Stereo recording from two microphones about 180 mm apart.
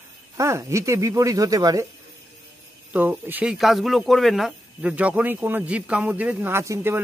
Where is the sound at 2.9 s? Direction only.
10° right (ahead or behind).